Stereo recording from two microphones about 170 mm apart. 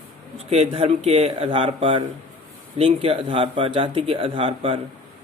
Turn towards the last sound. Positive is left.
turn(degrees=-30)  # may be behind; listen again after turning